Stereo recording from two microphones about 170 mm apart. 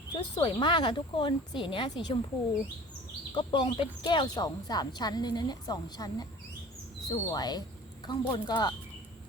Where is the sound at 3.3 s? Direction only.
25° left (ahead or behind).